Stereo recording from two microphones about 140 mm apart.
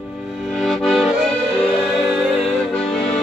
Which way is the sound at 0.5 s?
Centre (ahead or behind).